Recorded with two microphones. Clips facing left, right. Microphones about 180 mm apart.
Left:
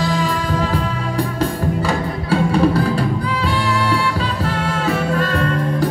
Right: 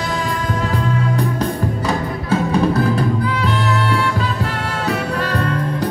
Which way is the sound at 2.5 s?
20° right (ahead or behind).